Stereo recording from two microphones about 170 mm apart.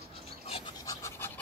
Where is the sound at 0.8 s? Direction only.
20° left (ahead or behind).